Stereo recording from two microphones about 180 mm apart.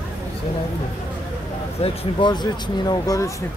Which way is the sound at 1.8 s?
25° left (ahead or behind).